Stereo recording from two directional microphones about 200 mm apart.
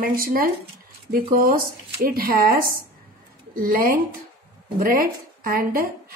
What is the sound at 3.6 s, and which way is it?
A woman's voice, 45° right (ahead or behind).